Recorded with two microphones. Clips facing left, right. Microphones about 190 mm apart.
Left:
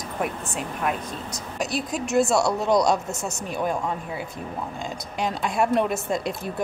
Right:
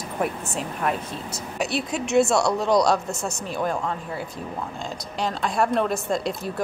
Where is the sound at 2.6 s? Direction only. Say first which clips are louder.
Right 1 dB; 20° left (ahead or behind).